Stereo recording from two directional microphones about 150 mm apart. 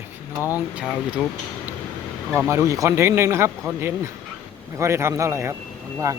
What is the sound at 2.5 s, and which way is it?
Speech, 20° right (ahead or behind).